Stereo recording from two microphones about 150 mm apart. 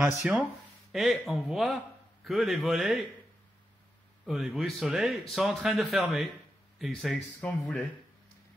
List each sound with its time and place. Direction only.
0.0 s speech: 5° right (ahead or behind)
4.3 s speech: 5° right (ahead or behind)